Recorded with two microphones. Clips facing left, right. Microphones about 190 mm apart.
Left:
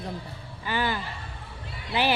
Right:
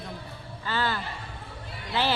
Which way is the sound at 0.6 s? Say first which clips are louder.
Left 1 dB; 15° left (ahead or behind).